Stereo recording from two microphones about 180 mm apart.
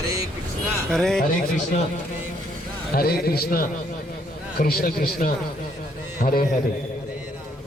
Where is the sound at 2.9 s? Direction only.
60° left (ahead or behind).